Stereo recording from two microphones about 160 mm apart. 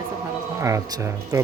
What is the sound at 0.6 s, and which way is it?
Speech, 20° right (ahead or behind).